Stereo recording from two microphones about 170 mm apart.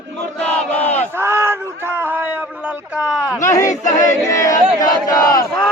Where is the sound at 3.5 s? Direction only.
20° left (ahead or behind).